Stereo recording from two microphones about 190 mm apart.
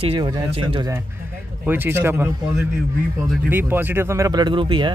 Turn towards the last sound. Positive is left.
turn(degrees=-25)  # may be behind; listen again after turning